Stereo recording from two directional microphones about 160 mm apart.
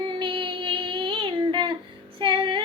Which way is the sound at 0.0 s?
30° right (ahead or behind).